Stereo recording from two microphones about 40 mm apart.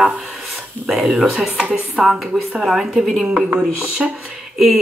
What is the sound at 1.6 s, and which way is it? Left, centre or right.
Speech, right.